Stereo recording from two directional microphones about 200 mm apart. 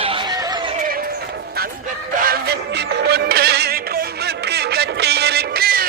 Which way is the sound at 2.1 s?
45° right (ahead or behind).